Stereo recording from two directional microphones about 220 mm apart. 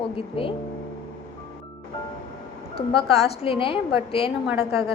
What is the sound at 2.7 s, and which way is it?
Speech, 25° left (ahead or behind).